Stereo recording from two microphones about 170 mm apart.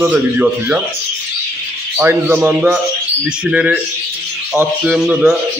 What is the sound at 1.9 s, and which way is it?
A man's voice, 15° right (ahead or behind).